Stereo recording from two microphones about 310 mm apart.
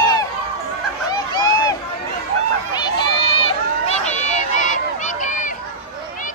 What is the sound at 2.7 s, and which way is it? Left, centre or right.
Run, centre.